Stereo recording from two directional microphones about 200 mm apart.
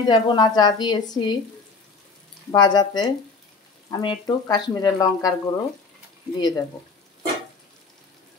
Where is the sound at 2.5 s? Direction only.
20° left (ahead or behind).